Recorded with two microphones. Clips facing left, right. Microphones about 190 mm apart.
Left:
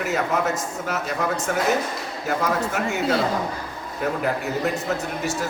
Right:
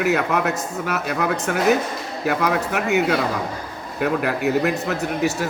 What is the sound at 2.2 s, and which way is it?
Speech, 65° right (ahead or behind).